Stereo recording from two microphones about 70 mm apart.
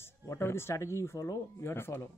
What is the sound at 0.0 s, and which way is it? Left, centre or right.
Speech, left.